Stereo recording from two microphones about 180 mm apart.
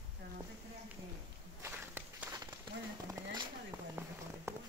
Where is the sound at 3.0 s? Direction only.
20° right (ahead or behind).